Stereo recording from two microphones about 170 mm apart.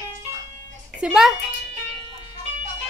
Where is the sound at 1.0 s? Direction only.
Centre (ahead or behind).